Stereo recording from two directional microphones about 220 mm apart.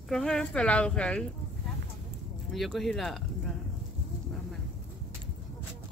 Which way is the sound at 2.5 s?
Centre (ahead or behind).